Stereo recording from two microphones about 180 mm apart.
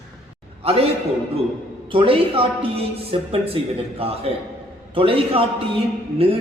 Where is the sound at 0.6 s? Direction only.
35° right (ahead or behind).